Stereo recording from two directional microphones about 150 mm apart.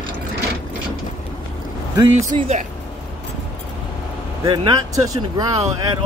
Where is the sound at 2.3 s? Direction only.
45° right (ahead or behind).